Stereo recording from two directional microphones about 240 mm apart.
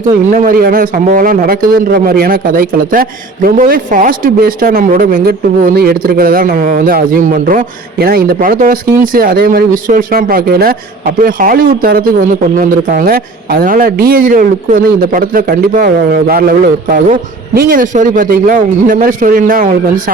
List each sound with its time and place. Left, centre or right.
0.0 s speech: right